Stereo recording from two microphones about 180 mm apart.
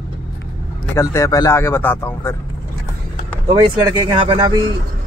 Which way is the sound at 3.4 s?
20° right (ahead or behind).